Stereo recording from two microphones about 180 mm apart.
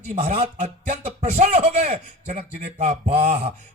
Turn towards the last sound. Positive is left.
turn(degrees=-40)  # may be behind; listen again after turning